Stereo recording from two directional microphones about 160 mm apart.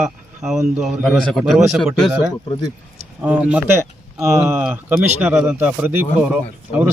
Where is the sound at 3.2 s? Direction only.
10° right (ahead or behind).